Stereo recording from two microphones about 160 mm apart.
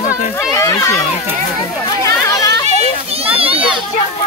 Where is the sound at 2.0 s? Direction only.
20° left (ahead or behind).